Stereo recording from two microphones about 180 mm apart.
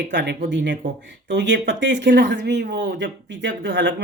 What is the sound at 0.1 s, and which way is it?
Speech, 75° right (ahead or behind).